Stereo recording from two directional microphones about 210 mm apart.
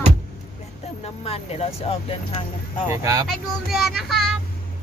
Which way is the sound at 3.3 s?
Centre (ahead or behind).